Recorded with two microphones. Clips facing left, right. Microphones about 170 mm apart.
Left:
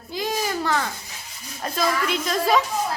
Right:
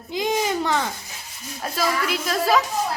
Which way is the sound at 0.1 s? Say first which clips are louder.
Right 3 dB; 20° right (ahead or behind).